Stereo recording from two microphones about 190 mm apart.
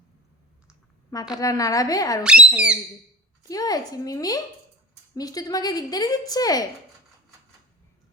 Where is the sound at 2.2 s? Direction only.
5° right (ahead or behind).